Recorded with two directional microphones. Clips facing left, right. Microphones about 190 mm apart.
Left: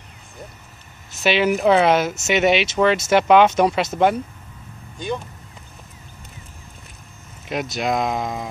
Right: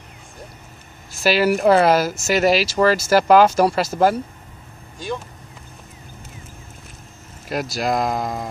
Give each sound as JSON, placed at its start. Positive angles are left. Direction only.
{"t": 1.2, "sound": "speech", "side_deg": -5}
{"t": 4.9, "sound": "speech", "side_deg": 0}
{"t": 7.7, "sound": "speech", "side_deg": 0}